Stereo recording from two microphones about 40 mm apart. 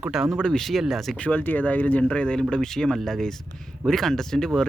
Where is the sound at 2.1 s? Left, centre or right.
Left.